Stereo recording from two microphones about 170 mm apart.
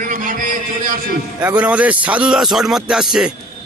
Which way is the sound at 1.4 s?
10° right (ahead or behind).